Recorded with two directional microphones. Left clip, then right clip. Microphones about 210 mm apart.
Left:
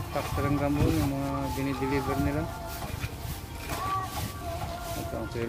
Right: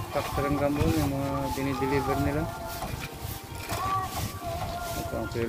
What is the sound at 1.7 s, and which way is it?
Speech, 50° right (ahead or behind).